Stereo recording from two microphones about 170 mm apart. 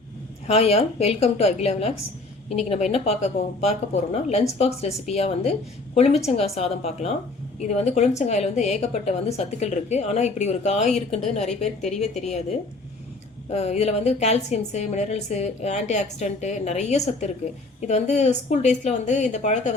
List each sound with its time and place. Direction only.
0.4 s a woman's voice: 35° left (ahead or behind)